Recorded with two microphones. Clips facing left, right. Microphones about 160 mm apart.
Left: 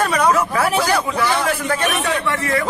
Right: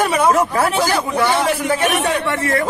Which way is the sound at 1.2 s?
20° right (ahead or behind).